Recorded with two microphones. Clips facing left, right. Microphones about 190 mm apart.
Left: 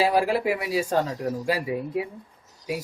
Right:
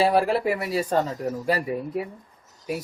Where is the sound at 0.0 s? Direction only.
10° left (ahead or behind).